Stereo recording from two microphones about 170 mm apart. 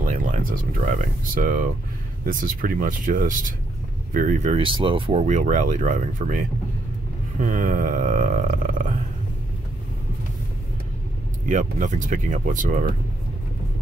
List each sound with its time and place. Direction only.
0.0 s speech: 50° right (ahead or behind)
4.6 s speech: 30° right (ahead or behind); by 8.9 s 50° right (ahead or behind)
11.4 s speech: 45° right (ahead or behind)